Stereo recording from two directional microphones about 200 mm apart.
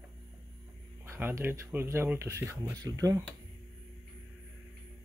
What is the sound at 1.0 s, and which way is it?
Speech, 10° right (ahead or behind).